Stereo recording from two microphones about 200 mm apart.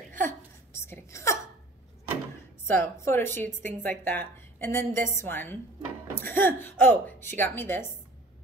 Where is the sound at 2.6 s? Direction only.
10° left (ahead or behind).